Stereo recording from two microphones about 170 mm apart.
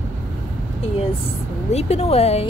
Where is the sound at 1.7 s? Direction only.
40° left (ahead or behind).